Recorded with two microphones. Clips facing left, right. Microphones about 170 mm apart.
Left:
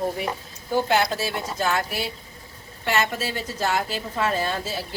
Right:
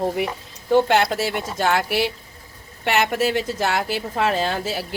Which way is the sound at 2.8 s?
70° right (ahead or behind).